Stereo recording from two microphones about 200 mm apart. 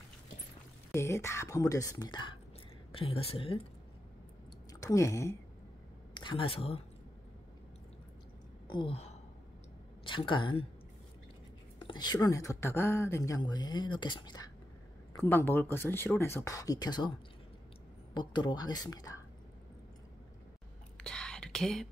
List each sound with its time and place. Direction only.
0.9 s speech: 15° left (ahead or behind)
4.7 s speech: 15° left (ahead or behind)
8.6 s a sound: 25° left (ahead or behind)
10.0 s speech: 25° left (ahead or behind)
11.8 s speech: 20° left (ahead or behind)
15.1 s speech: 10° left (ahead or behind)
18.1 s speech: 20° left (ahead or behind)
21.0 s whispering: 5° left (ahead or behind)